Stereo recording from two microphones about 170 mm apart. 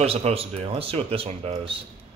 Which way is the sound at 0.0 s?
35° right (ahead or behind).